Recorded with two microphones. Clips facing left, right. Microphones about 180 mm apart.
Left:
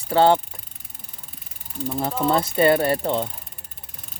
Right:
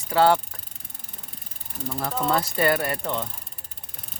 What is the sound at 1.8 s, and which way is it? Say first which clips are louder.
Speech: left 4 dB; 20° left (ahead or behind).